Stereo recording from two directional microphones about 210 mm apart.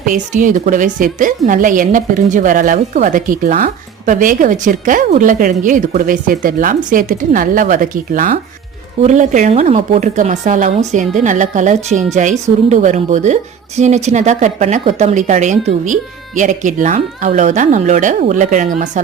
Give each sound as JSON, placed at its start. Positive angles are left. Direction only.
{"t": 0.1, "sound": "a woman's voice", "side_deg": -40}